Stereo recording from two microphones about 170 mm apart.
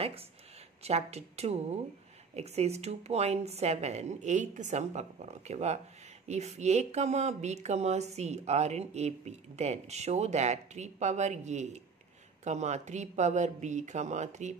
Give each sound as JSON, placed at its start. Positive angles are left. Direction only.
{"t": 0.0, "sound": "speech", "side_deg": -35}